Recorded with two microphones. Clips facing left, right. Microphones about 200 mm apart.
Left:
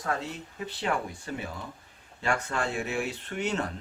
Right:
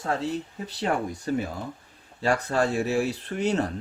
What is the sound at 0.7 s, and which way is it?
Speech, 40° right (ahead or behind).